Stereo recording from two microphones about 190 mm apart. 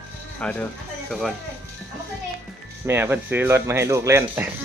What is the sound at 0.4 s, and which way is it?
Speech, 5° left (ahead or behind).